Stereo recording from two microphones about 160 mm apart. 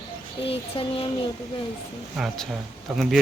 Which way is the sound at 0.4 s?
35° left (ahead or behind).